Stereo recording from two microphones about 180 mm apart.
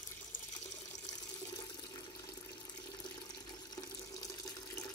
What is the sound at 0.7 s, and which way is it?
Water tap, 20° left (ahead or behind).